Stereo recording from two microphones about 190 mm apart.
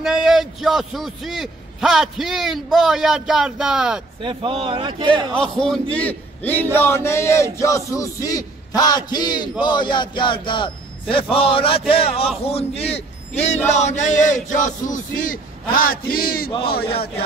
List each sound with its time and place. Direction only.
0.0 s a man's voice: 5° right (ahead or behind)
4.2 s speech: 25° right (ahead or behind)
5.4 s a man's voice: 5° left (ahead or behind); by 15.4 s 45° left (ahead or behind)
15.7 s chant: 50° left (ahead or behind)
16.6 s a man's voice: 55° left (ahead or behind)